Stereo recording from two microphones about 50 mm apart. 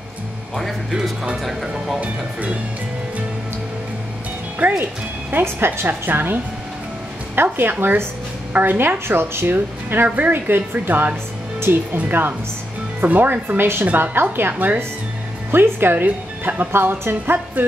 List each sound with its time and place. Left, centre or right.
1.4 s speech: centre
2.0 s speech: right
4.6 s a woman's voice: right
7.4 s speech: right
10.0 s a woman's voice: right